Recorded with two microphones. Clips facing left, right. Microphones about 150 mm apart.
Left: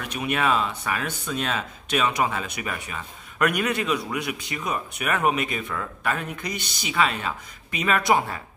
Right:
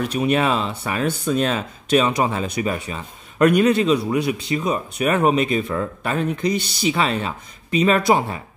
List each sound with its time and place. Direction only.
0.0 s speech: 35° right (ahead or behind)